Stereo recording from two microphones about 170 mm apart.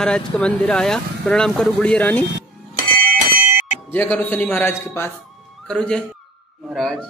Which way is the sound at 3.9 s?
10° left (ahead or behind).